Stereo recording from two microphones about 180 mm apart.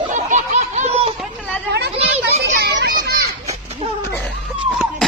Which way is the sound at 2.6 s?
60° right (ahead or behind).